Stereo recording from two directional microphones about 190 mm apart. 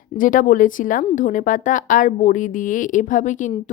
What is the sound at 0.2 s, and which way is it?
A woman's voice, 45° left (ahead or behind).